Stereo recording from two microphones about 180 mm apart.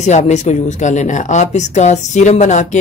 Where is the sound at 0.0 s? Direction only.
40° left (ahead or behind).